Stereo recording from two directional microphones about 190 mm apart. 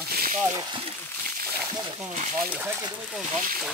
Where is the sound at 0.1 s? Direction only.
50° right (ahead or behind).